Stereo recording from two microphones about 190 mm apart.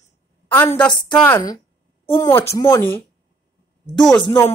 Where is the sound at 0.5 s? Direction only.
10° left (ahead or behind).